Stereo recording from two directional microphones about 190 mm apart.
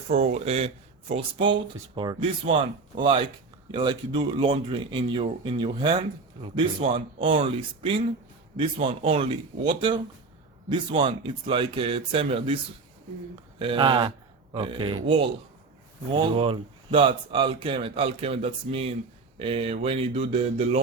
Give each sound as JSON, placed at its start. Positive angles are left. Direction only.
{"t": 0.1, "sound": "a man's voice", "side_deg": -35}
{"t": 13.6, "sound": "a man's voice", "side_deg": -25}